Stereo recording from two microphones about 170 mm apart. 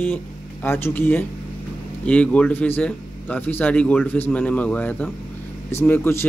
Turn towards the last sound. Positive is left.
turn(degrees=15)  # may be behind; listen again after turning